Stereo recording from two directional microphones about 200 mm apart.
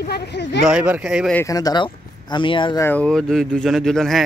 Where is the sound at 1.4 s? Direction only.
20° left (ahead or behind).